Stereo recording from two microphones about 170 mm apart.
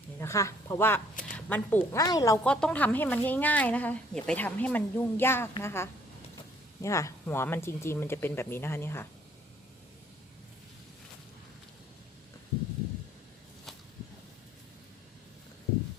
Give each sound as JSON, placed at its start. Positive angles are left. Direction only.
{"t": 0.2, "sound": "a woman's voice", "side_deg": 15}
{"t": 2.4, "sound": "a woman's voice", "side_deg": 5}